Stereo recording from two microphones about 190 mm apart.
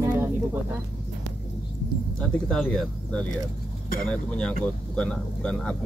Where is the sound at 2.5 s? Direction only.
5° left (ahead or behind).